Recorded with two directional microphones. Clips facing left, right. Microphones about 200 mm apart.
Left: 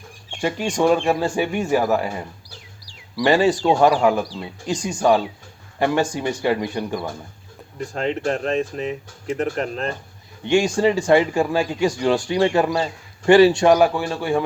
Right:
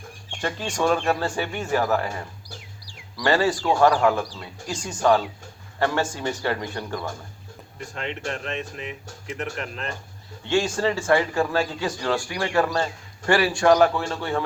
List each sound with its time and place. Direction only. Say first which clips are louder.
0.4 s speech: left 5 dB; 15° left (ahead or behind)
3.2 s speech: left 4 dB; 15° left (ahead or behind)
7.8 s speech: left 8 dB; 40° left (ahead or behind)
10.4 s speech: left 5 dB; 15° left (ahead or behind)
13.7 s speech: left 2 dB; 10° left (ahead or behind)